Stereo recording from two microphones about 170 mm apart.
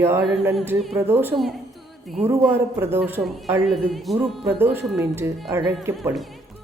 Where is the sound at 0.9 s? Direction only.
10° right (ahead or behind).